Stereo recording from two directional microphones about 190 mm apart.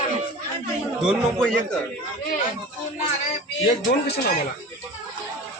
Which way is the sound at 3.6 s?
55° left (ahead or behind).